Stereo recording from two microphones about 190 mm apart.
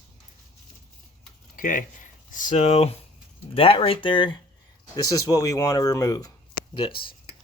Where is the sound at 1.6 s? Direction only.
45° left (ahead or behind).